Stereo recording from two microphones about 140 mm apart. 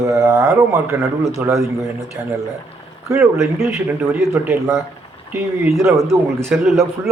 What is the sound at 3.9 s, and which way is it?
A man's voice, 15° right (ahead or behind).